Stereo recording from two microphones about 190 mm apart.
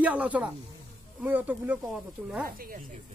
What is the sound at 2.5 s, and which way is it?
Speech, 45° right (ahead or behind).